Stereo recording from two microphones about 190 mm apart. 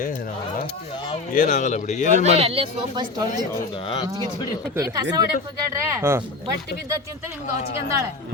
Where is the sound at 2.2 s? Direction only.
30° right (ahead or behind).